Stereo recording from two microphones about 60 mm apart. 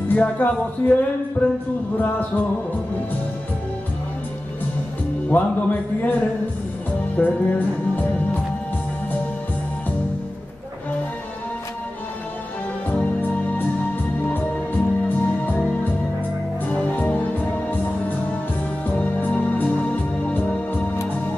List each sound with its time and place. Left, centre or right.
0.1 s a man's voice: left
5.3 s a man's voice: left
7.2 s music: left
13.0 s music: left
16.6 s music: left
18.9 s music: left